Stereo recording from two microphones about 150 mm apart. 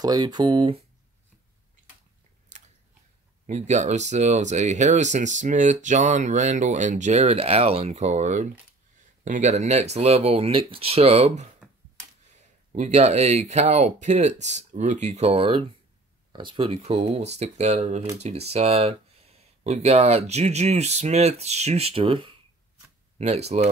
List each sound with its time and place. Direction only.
0.0 s speech: 25° right (ahead or behind)
2.5 s chewing: 55° right (ahead or behind)
3.4 s speech: 50° right (ahead or behind)